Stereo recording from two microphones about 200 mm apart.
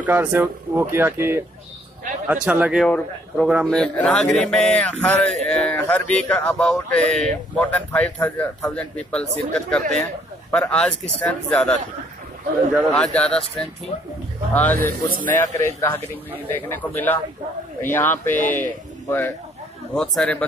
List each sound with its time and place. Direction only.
0.0 s speech: 10° right (ahead or behind); by 11.7 s 5° left (ahead or behind)
12.9 s speech: 5° left (ahead or behind)
14.5 s speech: 10° left (ahead or behind)
15.1 s speech: 40° right (ahead or behind)
15.5 s speech: 15° left (ahead or behind)